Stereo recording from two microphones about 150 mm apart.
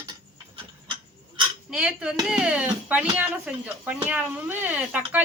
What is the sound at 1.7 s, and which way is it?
Dishes, 5° right (ahead or behind).